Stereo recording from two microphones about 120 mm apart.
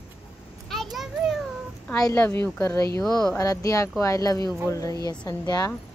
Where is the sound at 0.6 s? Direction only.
Centre (ahead or behind).